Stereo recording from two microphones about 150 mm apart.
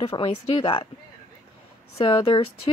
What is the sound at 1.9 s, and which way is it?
Speech, 35° left (ahead or behind).